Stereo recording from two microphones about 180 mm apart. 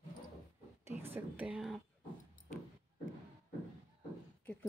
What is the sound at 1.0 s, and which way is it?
Speech, 10° right (ahead or behind).